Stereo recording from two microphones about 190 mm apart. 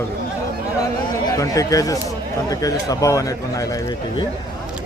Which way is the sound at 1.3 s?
15° left (ahead or behind).